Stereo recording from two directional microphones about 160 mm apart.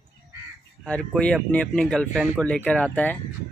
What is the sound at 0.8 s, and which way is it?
Speech, 5° left (ahead or behind).